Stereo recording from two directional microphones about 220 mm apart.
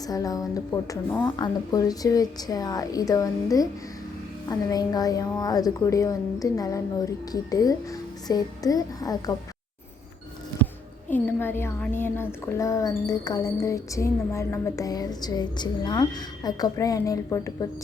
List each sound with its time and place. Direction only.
0.1 s a woman's voice: 15° left (ahead or behind)
11.1 s a woman's voice: 10° left (ahead or behind)